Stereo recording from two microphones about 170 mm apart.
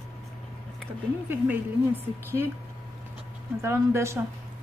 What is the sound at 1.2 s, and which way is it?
Speech, 10° right (ahead or behind).